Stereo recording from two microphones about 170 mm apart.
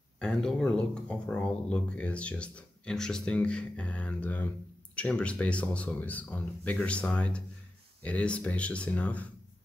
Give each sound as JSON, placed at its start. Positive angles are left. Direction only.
{"t": 0.2, "sound": "speech", "side_deg": 5}